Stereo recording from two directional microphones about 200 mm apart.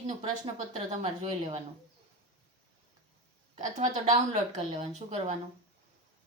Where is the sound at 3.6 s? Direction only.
40° right (ahead or behind).